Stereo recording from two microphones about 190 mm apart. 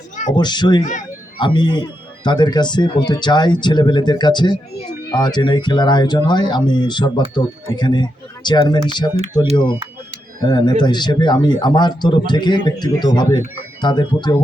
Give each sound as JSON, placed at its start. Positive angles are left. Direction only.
{"t": 0.3, "sound": "speech", "side_deg": 25}
{"t": 10.4, "sound": "speech", "side_deg": 20}